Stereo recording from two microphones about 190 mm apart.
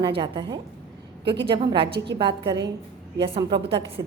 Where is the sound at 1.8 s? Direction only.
65° right (ahead or behind).